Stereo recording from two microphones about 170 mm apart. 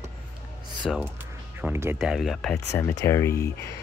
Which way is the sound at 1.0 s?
10° right (ahead or behind).